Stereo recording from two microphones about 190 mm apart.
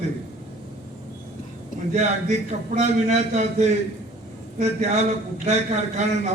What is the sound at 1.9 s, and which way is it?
A man's voice, 35° right (ahead or behind).